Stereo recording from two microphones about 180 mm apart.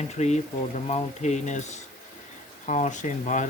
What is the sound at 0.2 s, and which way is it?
Speech, 40° left (ahead or behind).